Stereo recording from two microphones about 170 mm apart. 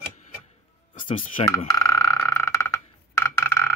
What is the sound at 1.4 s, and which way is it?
Speech, 35° left (ahead or behind).